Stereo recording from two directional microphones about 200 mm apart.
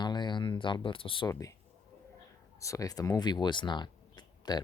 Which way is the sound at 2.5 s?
15° left (ahead or behind).